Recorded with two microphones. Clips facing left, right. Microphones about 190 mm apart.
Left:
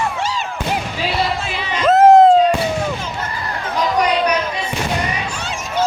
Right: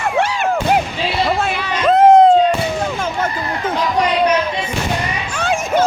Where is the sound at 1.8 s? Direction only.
Centre (ahead or behind).